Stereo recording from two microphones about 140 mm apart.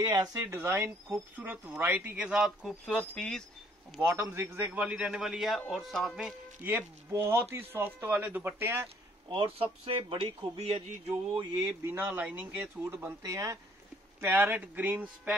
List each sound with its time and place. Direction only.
0.0 s speech: 30° right (ahead or behind); by 3.4 s 5° left (ahead or behind)
4.1 s speech: 15° right (ahead or behind); by 6.3 s centre (ahead or behind)
6.6 s speech: 15° right (ahead or behind)
9.3 s speech: 40° right (ahead or behind)
11.5 s speech: 20° right (ahead or behind)
13.2 s speech: 25° right (ahead or behind)